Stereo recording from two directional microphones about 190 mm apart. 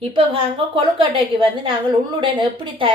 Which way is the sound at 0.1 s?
30° right (ahead or behind).